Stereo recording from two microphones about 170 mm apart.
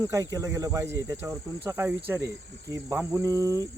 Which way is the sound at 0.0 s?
20° right (ahead or behind).